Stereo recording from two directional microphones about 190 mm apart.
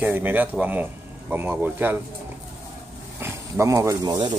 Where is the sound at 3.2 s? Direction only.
15° right (ahead or behind).